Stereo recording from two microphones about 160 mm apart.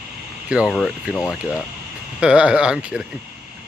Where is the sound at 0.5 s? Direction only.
5° right (ahead or behind).